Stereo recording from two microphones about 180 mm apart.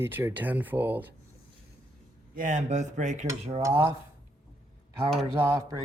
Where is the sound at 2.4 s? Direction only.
45° right (ahead or behind).